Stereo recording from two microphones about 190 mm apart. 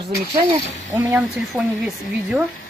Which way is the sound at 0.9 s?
15° right (ahead or behind).